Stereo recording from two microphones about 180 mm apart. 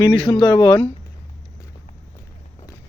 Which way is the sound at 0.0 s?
25° left (ahead or behind).